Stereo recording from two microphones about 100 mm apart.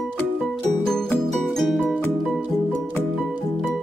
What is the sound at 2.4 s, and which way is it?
Music, 20° right (ahead or behind).